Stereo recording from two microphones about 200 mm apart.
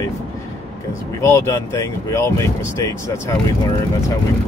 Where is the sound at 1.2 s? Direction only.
15° left (ahead or behind).